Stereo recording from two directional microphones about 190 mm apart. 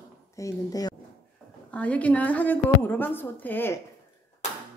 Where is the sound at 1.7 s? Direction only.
5° left (ahead or behind).